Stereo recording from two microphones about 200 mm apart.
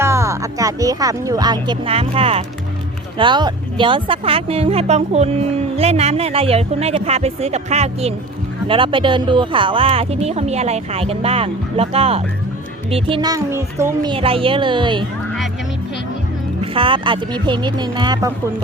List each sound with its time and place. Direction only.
0.0 s speech: 15° right (ahead or behind)
16.6 s speech: 25° right (ahead or behind)